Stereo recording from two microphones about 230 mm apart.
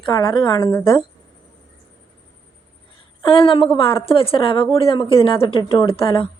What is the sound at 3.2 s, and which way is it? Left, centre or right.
A woman's voice, left.